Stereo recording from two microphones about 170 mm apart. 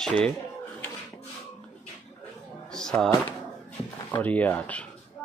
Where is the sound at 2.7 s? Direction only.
5° left (ahead or behind).